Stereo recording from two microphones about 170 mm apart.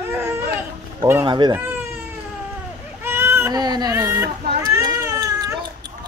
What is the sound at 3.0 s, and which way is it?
Baby cry, 15° right (ahead or behind).